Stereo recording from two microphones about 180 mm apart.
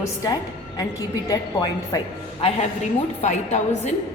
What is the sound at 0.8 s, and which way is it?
A woman's voice, 20° left (ahead or behind).